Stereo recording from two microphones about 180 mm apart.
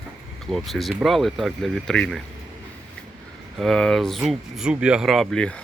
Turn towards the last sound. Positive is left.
turn(degrees=5)  # may be behind; listen again after turning